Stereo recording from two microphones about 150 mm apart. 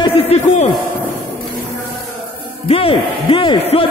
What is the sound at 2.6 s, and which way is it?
A man's voice, 40° left (ahead or behind).